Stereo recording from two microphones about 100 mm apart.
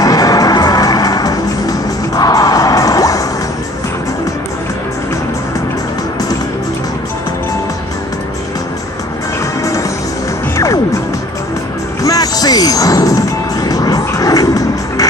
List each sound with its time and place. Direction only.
0.0 s music: 35° left (ahead or behind)
9.6 s music: 30° left (ahead or behind)
12.0 s music: 35° left (ahead or behind)